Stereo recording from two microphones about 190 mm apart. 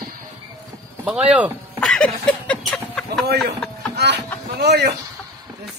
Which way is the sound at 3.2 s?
60° right (ahead or behind).